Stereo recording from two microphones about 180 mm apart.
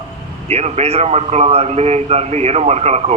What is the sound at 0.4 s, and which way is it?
A man's voice, 35° right (ahead or behind).